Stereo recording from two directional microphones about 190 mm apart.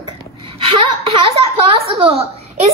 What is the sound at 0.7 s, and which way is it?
A woman's voice, 30° right (ahead or behind).